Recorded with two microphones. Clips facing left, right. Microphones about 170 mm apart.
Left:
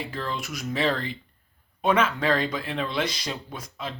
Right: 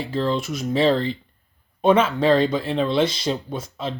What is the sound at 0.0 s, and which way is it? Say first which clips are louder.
Speech: right 9 dB; 30° right (ahead or behind).